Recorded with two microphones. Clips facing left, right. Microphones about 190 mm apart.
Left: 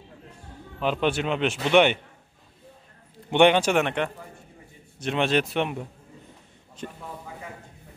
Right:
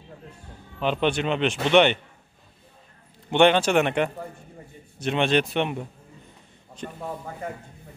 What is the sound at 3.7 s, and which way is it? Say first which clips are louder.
A man's voice: right 3 dB; 5° right (ahead or behind).